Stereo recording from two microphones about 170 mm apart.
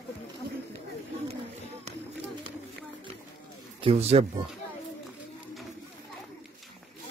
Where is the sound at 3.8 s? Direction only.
35° right (ahead or behind).